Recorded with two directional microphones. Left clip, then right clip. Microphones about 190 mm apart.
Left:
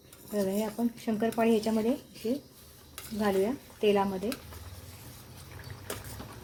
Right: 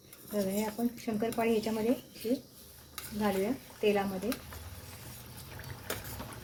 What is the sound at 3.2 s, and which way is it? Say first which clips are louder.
Speech: left 4 dB; 45° left (ahead or behind).